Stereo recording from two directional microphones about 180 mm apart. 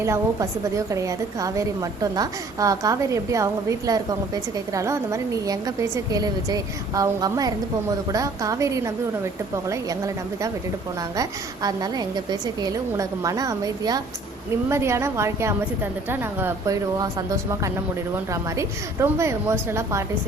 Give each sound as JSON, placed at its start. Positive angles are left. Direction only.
{"t": 0.0, "sound": "a woman's voice", "side_deg": -15}